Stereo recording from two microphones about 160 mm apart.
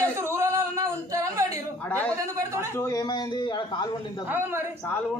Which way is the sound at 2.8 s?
25° left (ahead or behind).